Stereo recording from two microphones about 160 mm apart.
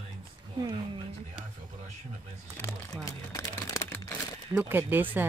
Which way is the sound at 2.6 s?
20° left (ahead or behind).